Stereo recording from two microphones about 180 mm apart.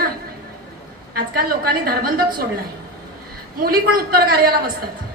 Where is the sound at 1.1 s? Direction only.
55° right (ahead or behind).